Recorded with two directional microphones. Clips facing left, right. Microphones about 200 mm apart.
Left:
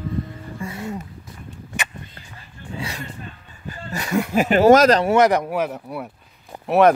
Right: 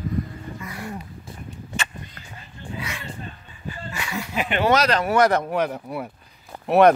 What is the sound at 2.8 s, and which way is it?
Music, 35° left (ahead or behind).